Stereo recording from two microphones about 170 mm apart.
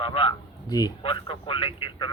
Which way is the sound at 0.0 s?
30° left (ahead or behind).